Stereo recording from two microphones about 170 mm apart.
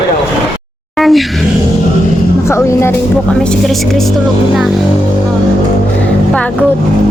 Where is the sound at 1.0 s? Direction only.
Centre (ahead or behind).